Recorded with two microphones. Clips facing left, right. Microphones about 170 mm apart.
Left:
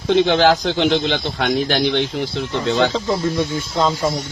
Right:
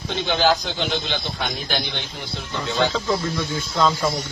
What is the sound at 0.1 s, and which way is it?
Speech, 70° left (ahead or behind).